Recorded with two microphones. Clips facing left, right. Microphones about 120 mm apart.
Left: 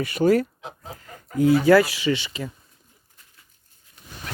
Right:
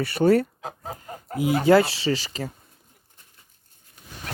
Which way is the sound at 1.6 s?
25° right (ahead or behind).